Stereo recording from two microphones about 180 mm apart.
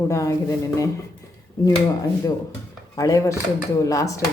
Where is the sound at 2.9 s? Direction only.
20° left (ahead or behind).